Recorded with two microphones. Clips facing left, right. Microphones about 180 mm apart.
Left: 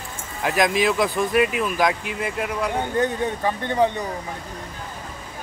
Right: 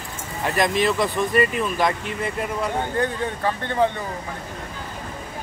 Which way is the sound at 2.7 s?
20° left (ahead or behind).